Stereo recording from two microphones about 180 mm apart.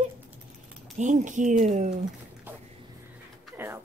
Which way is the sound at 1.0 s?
45° right (ahead or behind).